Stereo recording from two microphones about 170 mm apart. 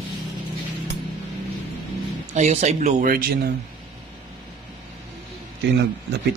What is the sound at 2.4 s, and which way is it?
Speech, 40° right (ahead or behind).